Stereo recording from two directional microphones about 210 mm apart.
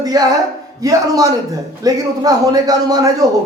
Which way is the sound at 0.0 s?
15° right (ahead or behind).